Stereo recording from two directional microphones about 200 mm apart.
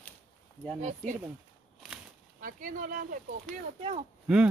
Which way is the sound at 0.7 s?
35° right (ahead or behind).